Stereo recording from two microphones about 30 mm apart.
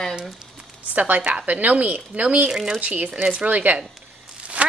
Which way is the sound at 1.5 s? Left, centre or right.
Right.